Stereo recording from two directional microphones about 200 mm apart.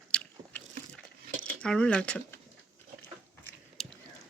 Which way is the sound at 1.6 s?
5° left (ahead or behind).